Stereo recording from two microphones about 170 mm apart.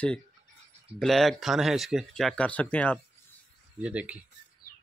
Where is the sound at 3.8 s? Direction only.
10° right (ahead or behind).